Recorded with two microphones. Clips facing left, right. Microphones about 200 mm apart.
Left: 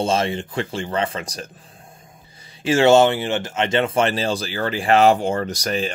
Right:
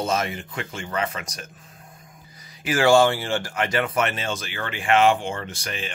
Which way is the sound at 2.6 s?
25° left (ahead or behind).